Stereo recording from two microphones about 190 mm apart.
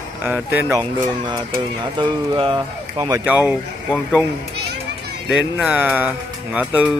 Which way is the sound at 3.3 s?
10° right (ahead or behind).